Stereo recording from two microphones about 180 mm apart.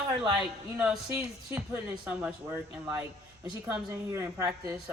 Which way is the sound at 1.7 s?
10° right (ahead or behind).